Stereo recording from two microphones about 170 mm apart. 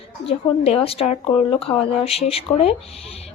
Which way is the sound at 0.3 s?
35° left (ahead or behind).